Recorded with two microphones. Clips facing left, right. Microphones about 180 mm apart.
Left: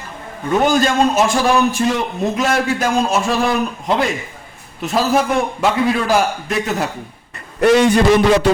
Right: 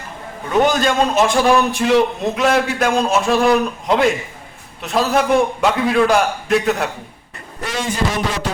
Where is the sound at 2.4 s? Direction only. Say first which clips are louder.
Right 3 dB; centre (ahead or behind).